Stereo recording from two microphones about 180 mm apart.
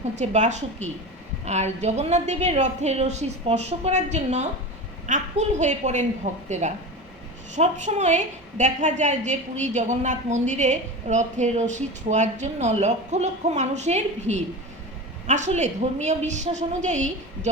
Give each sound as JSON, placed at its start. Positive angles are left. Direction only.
{"t": 0.2, "sound": "a woman's voice", "side_deg": -40}